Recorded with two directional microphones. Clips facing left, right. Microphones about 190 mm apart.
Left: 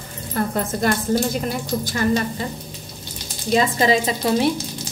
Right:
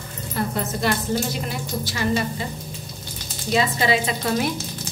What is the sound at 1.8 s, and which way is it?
Speech, 50° left (ahead or behind).